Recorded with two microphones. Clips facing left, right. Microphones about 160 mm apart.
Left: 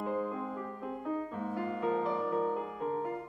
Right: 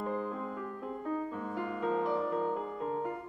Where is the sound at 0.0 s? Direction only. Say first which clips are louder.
Left 1 dB; 10° left (ahead or behind).